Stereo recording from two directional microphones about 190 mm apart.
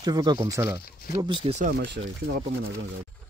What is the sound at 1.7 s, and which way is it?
Speech, 65° right (ahead or behind).